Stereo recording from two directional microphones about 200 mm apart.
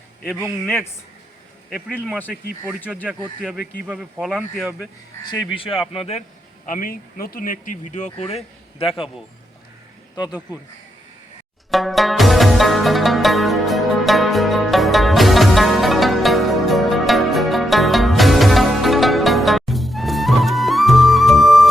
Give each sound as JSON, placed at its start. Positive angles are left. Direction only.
{"t": 0.3, "sound": "speech", "side_deg": -10}
{"t": 1.7, "sound": "speech", "side_deg": -5}
{"t": 5.9, "sound": "speech", "side_deg": 30}
{"t": 6.7, "sound": "speech", "side_deg": 45}
{"t": 10.2, "sound": "speech", "side_deg": -5}
{"t": 11.7, "sound": "music", "side_deg": 0}